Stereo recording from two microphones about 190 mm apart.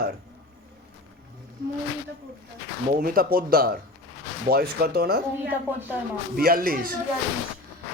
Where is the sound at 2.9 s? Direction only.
50° right (ahead or behind).